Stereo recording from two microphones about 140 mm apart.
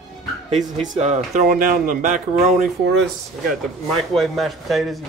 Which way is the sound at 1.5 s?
80° right.